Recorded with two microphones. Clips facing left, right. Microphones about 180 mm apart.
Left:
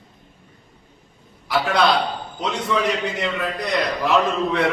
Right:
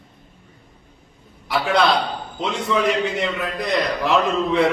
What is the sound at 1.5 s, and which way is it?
A man's voice, centre (ahead or behind).